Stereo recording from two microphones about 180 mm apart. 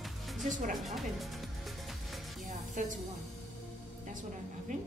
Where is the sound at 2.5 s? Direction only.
45° right (ahead or behind).